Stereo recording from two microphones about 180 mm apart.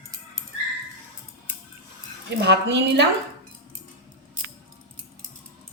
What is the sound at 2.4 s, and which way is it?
Speech, 70° right (ahead or behind).